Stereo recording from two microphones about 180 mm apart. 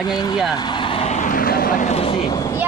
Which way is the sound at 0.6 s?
25° left (ahead or behind).